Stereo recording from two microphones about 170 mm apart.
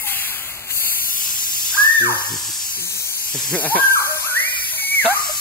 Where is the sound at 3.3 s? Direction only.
5° left (ahead or behind).